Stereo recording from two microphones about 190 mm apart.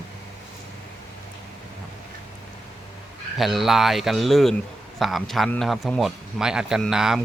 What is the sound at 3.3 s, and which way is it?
Speech, centre (ahead or behind).